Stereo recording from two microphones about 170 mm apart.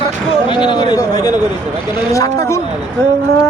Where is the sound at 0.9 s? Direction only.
20° left (ahead or behind).